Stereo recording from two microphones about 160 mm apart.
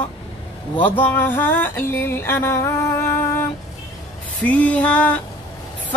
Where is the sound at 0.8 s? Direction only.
10° left (ahead or behind).